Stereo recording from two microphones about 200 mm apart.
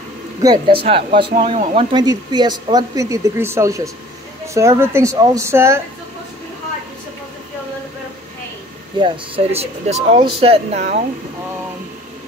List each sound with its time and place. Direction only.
0.4 s speech: 20° right (ahead or behind)
8.9 s speech: 25° right (ahead or behind)